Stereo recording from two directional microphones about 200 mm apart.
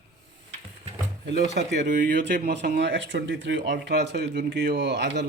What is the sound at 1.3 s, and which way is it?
Speech, 60° right (ahead or behind).